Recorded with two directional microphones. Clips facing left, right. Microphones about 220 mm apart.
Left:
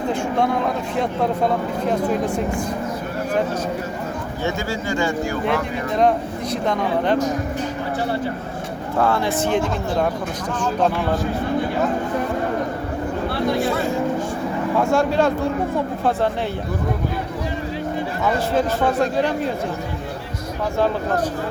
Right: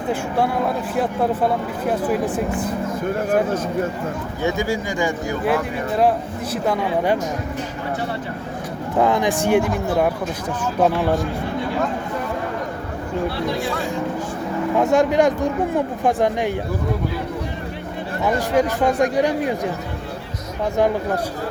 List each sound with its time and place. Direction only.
1.9 s speech: 5° right (ahead or behind)
4.4 s speech: 15° right (ahead or behind)
6.0 s speech: 5° right (ahead or behind)
9.0 s speech: 15° right (ahead or behind)
13.6 s speech: centre (ahead or behind)
14.8 s speech: 20° right (ahead or behind)
18.3 s speech: 15° right (ahead or behind)